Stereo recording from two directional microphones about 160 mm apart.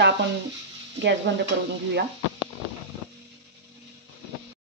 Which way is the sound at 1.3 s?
90° right.